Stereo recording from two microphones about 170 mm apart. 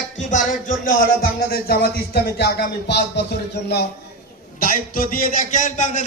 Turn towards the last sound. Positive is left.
turn(degrees=45)  # may be behind; listen again after turning